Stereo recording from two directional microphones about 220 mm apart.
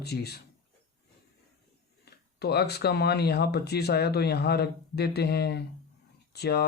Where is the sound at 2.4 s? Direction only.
50° left (ahead or behind).